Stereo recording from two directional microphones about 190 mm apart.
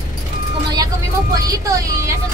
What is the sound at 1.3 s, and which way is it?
Speech, 20° right (ahead or behind).